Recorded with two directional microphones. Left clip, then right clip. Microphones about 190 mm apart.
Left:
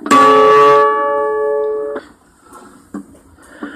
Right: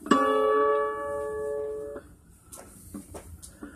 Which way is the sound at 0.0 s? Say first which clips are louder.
Left 15 dB; 35° left (ahead or behind).